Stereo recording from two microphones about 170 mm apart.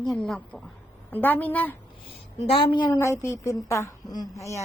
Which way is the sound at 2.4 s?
30° left (ahead or behind).